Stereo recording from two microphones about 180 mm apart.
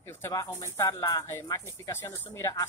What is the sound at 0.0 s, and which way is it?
Speech, 15° left (ahead or behind).